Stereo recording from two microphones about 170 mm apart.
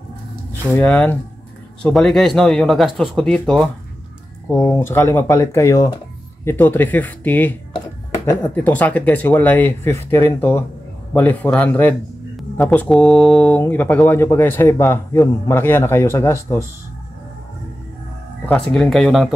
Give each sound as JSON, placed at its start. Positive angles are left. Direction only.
{"t": 0.7, "sound": "speech", "side_deg": 10}
{"t": 4.5, "sound": "speech", "side_deg": 15}
{"t": 18.4, "sound": "speech", "side_deg": 5}